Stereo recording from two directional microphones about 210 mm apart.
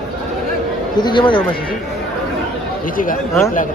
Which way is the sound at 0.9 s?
20° left (ahead or behind).